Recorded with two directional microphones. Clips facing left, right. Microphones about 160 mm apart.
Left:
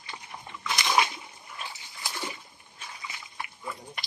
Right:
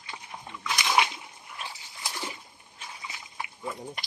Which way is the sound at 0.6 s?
10° right (ahead or behind).